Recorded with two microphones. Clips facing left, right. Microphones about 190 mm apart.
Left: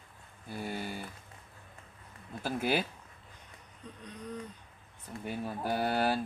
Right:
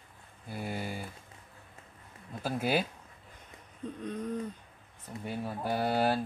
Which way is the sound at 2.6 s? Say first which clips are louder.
Right 1 dB; centre (ahead or behind).